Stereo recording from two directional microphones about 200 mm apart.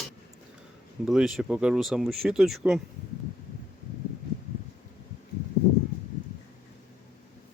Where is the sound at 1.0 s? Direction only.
Centre (ahead or behind).